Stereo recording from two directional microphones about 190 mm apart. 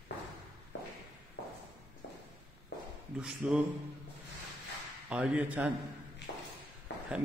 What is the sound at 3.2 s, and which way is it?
Speech, 5° right (ahead or behind).